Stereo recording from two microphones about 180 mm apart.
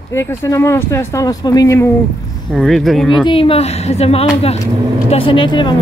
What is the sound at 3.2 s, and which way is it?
A woman's voice, 30° left (ahead or behind).